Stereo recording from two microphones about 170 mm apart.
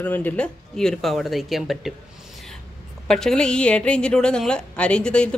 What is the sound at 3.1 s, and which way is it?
A woman's voice, 5° left (ahead or behind).